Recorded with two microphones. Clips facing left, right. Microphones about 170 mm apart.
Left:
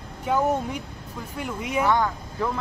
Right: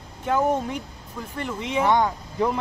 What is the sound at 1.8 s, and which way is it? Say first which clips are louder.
Speech: right 2 dB; 20° right (ahead or behind).